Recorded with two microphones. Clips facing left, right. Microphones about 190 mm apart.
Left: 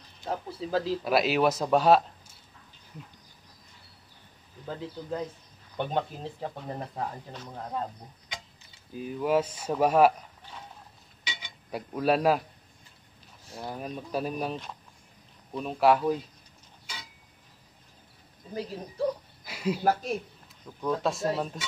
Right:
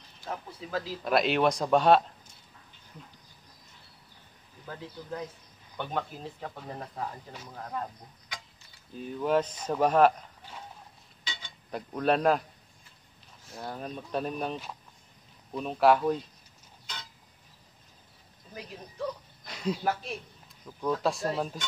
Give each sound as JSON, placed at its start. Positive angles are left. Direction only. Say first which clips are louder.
{"t": 0.3, "sound": "speech", "louder": "left 5 dB", "side_deg": 30}
{"t": 1.0, "sound": "speech", "louder": "right 1 dB", "side_deg": 5}
{"t": 5.8, "sound": "speech", "louder": "left 4 dB", "side_deg": 25}
{"t": 8.9, "sound": "speech", "louder": "left 1 dB", "side_deg": 5}
{"t": 11.2, "sound": "a sound", "louder": "left 2 dB", "side_deg": 15}
{"t": 11.9, "sound": "speech", "louder": "left 1 dB", "side_deg": 5}
{"t": 13.6, "sound": "speech", "louder": "left 1 dB", "side_deg": 10}
{"t": 16.8, "sound": "a sound", "louder": "even", "side_deg": 5}
{"t": 18.5, "sound": "speech", "louder": "left 8 dB", "side_deg": 35}
{"t": 19.4, "sound": "a sound", "louder": "left 2 dB", "side_deg": 5}
{"t": 19.8, "sound": "speech", "louder": "left 5 dB", "side_deg": 40}
{"t": 20.8, "sound": "speech", "louder": "left 1 dB", "side_deg": 0}